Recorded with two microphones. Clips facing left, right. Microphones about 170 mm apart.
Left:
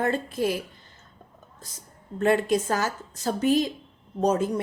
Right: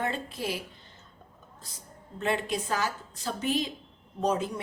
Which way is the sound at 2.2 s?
45° left (ahead or behind).